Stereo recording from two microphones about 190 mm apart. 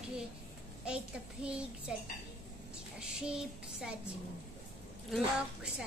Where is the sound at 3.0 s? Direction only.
5° right (ahead or behind).